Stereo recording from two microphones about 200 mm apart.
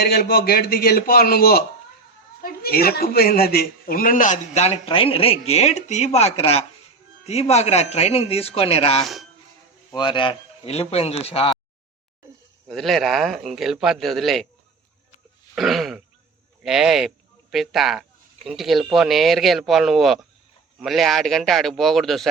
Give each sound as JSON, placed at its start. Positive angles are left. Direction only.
{"t": 0.0, "sound": "a man's voice", "side_deg": 50}
{"t": 12.7, "sound": "a man's voice", "side_deg": 0}
{"t": 15.5, "sound": "a man's voice", "side_deg": 0}